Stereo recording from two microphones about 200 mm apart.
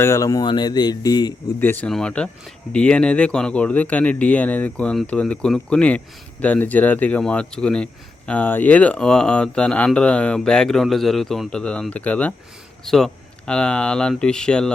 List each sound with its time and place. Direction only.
0.0 s speech: 15° left (ahead or behind)
1.7 s speech: 5° left (ahead or behind)